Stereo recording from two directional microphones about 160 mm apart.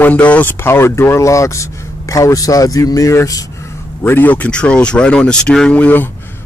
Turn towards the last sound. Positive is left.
turn(degrees=10)  # may be behind; listen again after turning